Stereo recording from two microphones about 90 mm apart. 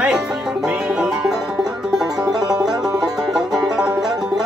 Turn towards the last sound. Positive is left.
turn(degrees=-10)  # may be behind; listen again after turning